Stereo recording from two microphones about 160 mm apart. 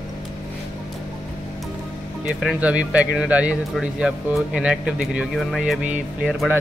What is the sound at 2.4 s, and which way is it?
Speech, 10° right (ahead or behind).